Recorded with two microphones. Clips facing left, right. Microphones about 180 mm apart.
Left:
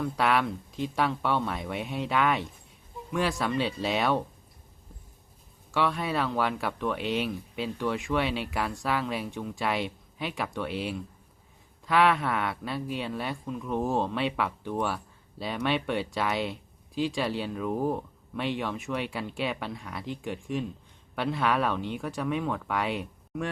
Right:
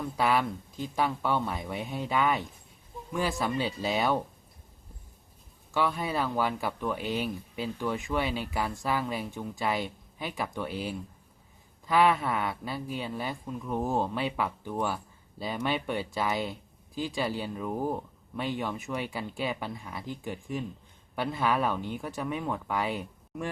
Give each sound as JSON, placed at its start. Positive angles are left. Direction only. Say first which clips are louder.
{"t": 0.2, "sound": "speech", "louder": "even", "side_deg": 0}
{"t": 5.7, "sound": "speech", "louder": "left 1 dB", "side_deg": 0}